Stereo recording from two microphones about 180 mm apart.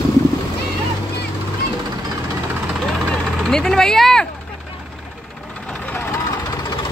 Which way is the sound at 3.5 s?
5° left (ahead or behind).